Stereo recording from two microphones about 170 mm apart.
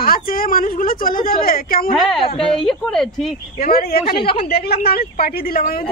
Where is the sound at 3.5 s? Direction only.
60° left (ahead or behind).